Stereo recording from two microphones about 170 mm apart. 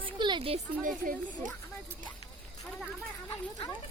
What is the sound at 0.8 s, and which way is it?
Speech, 50° right (ahead or behind).